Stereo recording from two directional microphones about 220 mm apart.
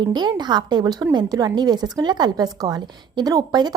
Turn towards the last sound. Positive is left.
turn(degrees=-20)  # may be behind; listen again after turning